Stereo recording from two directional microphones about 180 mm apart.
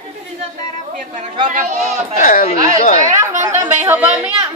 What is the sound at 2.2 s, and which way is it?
Speech, 50° left (ahead or behind).